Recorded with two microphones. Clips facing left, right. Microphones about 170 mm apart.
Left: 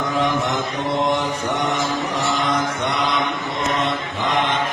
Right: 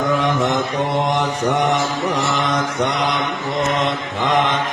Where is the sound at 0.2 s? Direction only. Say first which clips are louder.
Right 2 dB; 75° right (ahead or behind).